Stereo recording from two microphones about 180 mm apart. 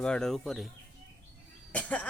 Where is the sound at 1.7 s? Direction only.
5° left (ahead or behind).